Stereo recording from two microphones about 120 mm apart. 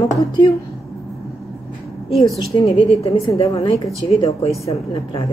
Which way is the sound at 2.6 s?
50° left (ahead or behind).